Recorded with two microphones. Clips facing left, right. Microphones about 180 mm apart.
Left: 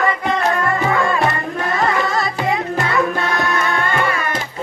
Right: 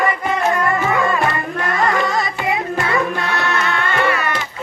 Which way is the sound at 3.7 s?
45° left (ahead or behind).